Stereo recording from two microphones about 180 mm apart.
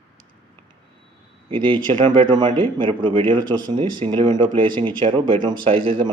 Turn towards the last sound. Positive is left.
turn(degrees=-30)  # may be behind; listen again after turning